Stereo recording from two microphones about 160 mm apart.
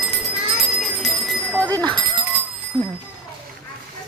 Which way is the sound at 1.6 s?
25° right (ahead or behind).